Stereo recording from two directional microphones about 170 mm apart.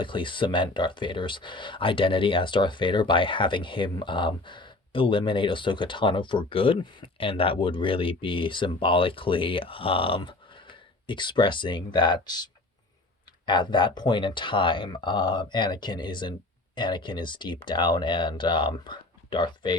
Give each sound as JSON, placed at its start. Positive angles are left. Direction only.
{"t": 0.0, "sound": "speech", "side_deg": 30}